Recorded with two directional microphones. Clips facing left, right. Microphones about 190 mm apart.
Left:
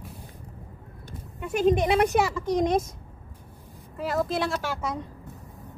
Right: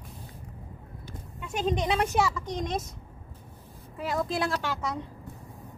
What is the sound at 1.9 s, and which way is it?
Speech, 60° left (ahead or behind).